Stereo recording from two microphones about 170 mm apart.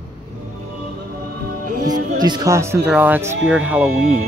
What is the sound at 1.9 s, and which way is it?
Speech, 25° right (ahead or behind).